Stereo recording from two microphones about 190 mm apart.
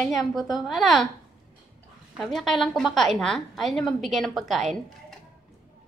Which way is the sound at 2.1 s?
Centre (ahead or behind).